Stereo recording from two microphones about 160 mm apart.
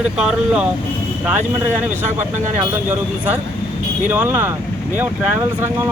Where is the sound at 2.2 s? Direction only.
50° right (ahead or behind).